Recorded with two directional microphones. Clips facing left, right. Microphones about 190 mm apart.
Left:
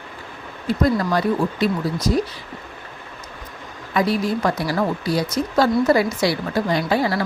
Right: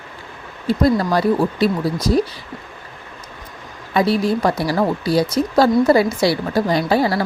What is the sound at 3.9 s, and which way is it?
Speech, 30° right (ahead or behind).